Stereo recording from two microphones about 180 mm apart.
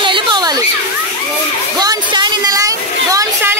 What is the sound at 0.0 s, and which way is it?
Children playing, 25° right (ahead or behind).